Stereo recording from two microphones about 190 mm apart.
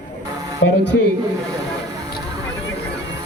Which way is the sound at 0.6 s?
90° left.